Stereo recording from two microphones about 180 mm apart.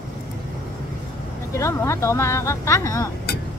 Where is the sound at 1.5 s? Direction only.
15° left (ahead or behind).